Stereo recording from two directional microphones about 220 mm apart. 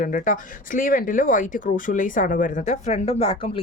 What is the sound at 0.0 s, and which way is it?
A woman's voice, 35° left (ahead or behind).